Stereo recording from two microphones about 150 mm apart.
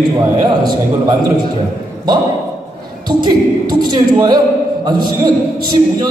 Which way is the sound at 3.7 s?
25° right (ahead or behind).